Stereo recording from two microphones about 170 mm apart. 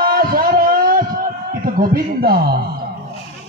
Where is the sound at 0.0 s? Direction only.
60° right (ahead or behind).